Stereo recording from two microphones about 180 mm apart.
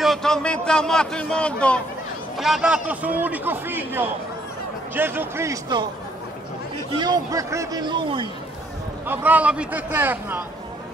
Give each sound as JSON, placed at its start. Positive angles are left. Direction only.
{"t": 0.0, "sound": "a man's voice", "side_deg": 0}
{"t": 7.0, "sound": "speech", "side_deg": -20}
{"t": 9.0, "sound": "a man's voice", "side_deg": -10}